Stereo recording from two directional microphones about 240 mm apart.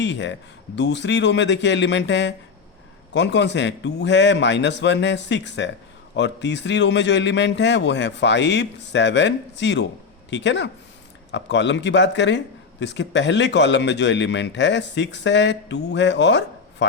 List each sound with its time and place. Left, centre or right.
0.0 s a man's voice: left